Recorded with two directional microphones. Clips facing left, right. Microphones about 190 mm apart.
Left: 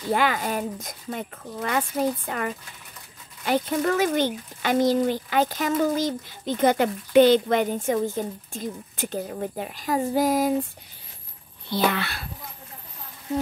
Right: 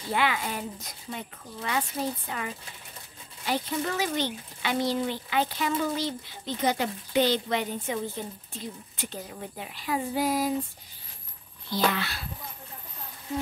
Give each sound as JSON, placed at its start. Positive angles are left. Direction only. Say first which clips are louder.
{"t": 0.1, "sound": "speech", "louder": "left 4 dB", "side_deg": 45}
{"t": 11.9, "sound": "a child's voice", "louder": "left 3 dB", "side_deg": 60}